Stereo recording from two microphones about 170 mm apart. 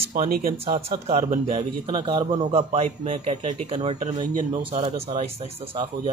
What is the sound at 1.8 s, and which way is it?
A man's voice, 30° right (ahead or behind).